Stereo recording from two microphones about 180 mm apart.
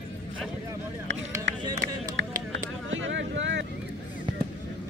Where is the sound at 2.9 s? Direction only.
90° right.